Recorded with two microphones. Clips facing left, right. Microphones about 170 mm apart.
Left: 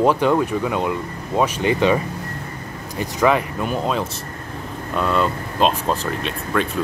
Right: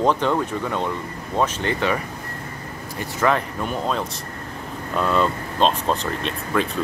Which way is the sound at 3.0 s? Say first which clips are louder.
Left 3 dB; 15° left (ahead or behind).